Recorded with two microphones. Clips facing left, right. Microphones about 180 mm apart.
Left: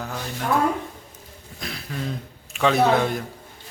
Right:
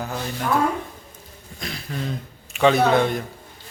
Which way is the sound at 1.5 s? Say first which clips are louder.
Right 1 dB; centre (ahead or behind).